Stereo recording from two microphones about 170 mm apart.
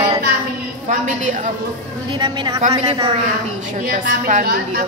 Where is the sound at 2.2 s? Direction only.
25° right (ahead or behind).